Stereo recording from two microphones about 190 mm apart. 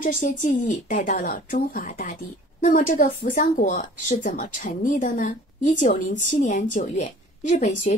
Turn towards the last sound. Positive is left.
turn(degrees=40)  # may be behind; listen again after turning